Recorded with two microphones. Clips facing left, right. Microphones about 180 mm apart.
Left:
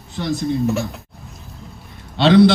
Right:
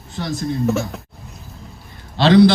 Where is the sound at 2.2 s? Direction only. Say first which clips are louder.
Even; centre (ahead or behind).